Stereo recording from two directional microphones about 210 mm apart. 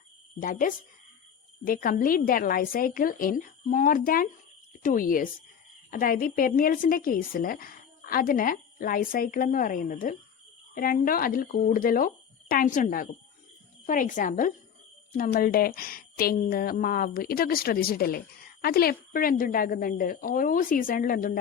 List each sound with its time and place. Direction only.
0.3 s a woman's voice: 40° left (ahead or behind)